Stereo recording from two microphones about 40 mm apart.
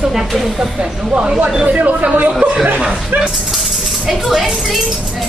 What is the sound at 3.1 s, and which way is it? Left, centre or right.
Speech, right.